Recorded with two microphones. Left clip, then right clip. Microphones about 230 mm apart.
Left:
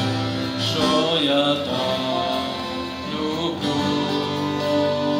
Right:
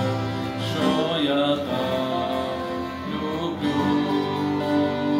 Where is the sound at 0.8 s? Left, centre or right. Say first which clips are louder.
Left 3 dB; left.